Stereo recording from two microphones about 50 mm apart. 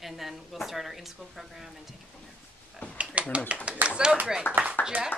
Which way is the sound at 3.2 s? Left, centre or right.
Right.